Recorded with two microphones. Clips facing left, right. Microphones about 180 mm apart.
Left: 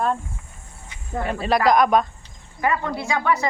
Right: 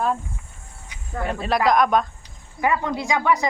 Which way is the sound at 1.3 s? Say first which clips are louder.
Left 1 dB; centre (ahead or behind).